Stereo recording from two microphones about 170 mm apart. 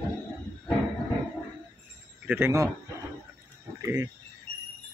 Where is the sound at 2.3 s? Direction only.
15° right (ahead or behind).